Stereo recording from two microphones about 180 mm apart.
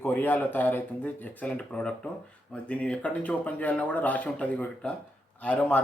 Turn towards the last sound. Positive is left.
turn(degrees=10)  # may be behind; listen again after turning